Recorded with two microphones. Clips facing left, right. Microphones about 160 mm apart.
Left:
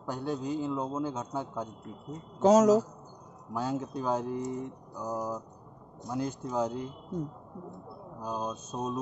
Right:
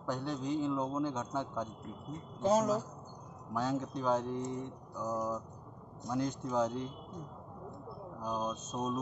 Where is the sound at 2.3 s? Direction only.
90° left.